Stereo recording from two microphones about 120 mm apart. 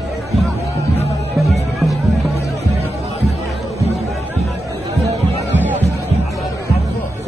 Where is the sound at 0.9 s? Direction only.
60° left (ahead or behind).